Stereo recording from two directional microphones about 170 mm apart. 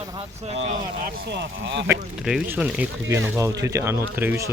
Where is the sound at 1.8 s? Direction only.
5° right (ahead or behind).